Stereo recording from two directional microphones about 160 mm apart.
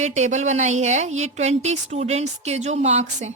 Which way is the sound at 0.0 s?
45° right (ahead or behind).